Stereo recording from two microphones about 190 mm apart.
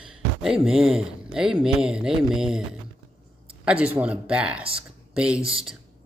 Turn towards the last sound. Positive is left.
turn(degrees=-30)  # may be behind; listen again after turning